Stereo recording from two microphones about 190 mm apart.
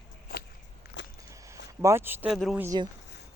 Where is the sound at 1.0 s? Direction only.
75° left (ahead or behind).